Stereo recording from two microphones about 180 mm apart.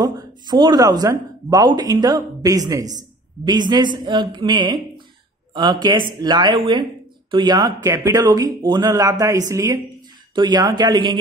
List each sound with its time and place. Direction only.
0.0 s speech: 25° right (ahead or behind)